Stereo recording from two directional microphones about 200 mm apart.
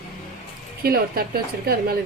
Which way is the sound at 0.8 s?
50° right (ahead or behind).